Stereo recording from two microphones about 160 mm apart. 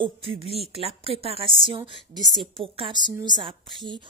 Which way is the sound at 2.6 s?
30° right (ahead or behind).